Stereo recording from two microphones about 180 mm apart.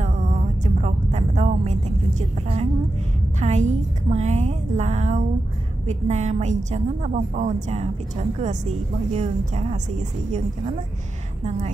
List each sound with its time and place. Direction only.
0.0 s a sound: 45° right (ahead or behind)
3.3 s a woman's voice: 40° right (ahead or behind)
11.4 s a woman's voice: 40° right (ahead or behind)